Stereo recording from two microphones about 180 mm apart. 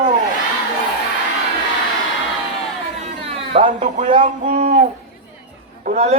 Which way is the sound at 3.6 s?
45° right (ahead or behind).